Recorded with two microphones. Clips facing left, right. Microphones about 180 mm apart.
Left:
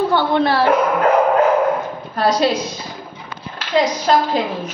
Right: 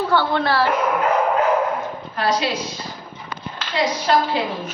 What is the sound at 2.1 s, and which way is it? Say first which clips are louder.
Speech: left 5 dB; 40° left (ahead or behind).